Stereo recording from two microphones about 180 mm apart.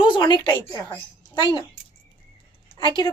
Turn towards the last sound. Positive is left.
turn(degrees=25)  # may be behind; listen again after turning